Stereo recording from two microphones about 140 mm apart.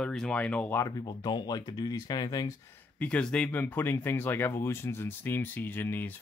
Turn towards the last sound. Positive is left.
turn(degrees=15)  # may be behind; listen again after turning